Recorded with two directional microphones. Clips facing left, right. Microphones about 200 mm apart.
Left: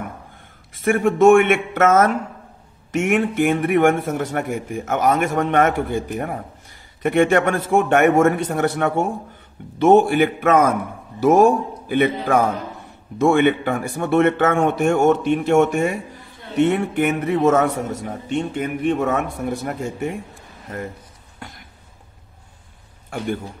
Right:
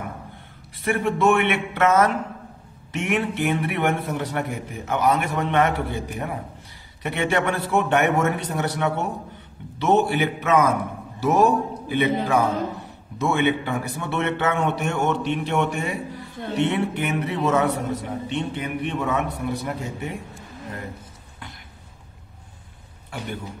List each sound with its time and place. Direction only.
0.7 s a man's voice: 50° left (ahead or behind)
21.4 s a sound: 45° left (ahead or behind)
23.0 s speech: 45° left (ahead or behind)